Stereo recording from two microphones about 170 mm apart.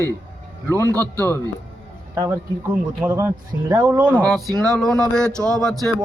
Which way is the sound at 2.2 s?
15° right (ahead or behind).